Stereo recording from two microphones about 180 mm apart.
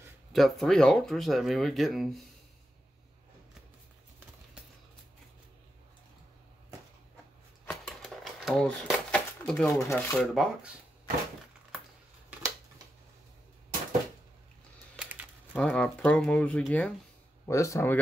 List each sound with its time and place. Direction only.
0.3 s speech: centre (ahead or behind)
7.6 s typewriter: 5° left (ahead or behind)
9.8 s speech: 10° left (ahead or behind)
10.3 s speech: 5° right (ahead or behind)
15.0 s a sound: 10° right (ahead or behind)
15.5 s speech: 5° left (ahead or behind)
17.5 s speech: 15° left (ahead or behind)